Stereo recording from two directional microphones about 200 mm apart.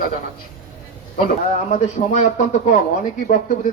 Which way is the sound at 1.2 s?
35° left (ahead or behind).